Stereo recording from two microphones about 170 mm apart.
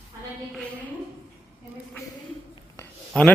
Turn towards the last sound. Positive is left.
turn(degrees=5)  # may be behind; listen again after turning